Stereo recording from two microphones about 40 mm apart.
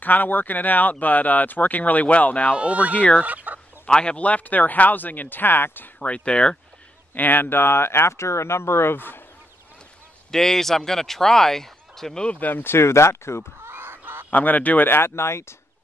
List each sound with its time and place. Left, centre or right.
0.0 s speech: left
2.5 s speech: right
3.8 s speech: left
4.2 s speech: left
5.9 s speech: left
7.2 s speech: left
10.3 s speech: centre
12.4 s speech: left
12.6 s speech: left
13.6 s fowl: right
14.3 s speech: left
14.9 s speech: left